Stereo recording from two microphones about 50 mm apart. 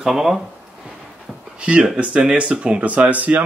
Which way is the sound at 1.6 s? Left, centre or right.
Right.